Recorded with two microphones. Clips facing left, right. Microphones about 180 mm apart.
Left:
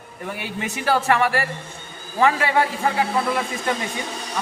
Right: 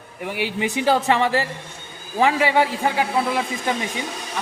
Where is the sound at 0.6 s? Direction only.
15° right (ahead or behind).